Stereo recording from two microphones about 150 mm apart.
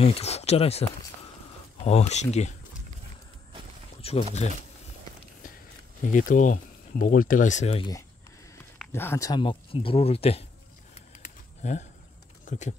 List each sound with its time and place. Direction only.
0.0 s speech: 45° left (ahead or behind)
1.9 s speech: 45° left (ahead or behind)
4.0 s speech: 45° left (ahead or behind)
6.1 s speech: 60° left (ahead or behind)
8.9 s speech: 15° left (ahead or behind)
9.4 s speech: 35° left (ahead or behind)
11.0 s a sound: 50° left (ahead or behind)
12.4 s speech: 50° left (ahead or behind)